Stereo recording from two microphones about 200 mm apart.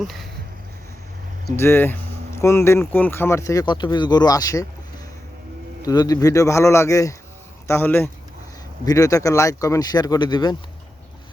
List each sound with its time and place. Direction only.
0.0 s a sound: centre (ahead or behind)
1.5 s speech: 10° left (ahead or behind)
5.8 s speech: 20° left (ahead or behind)